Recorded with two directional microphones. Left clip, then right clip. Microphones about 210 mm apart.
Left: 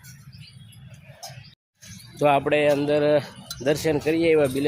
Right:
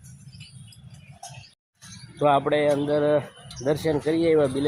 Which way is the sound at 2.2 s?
Centre (ahead or behind).